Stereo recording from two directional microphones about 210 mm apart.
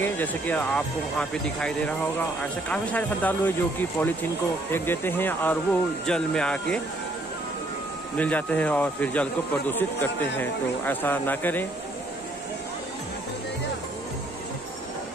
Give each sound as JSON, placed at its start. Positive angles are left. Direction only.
{"t": 0.0, "sound": "speech", "side_deg": 10}
{"t": 8.2, "sound": "speech", "side_deg": 5}